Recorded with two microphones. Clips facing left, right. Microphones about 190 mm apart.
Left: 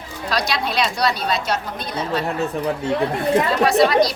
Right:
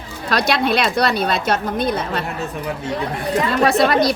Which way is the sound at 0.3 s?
55° right (ahead or behind).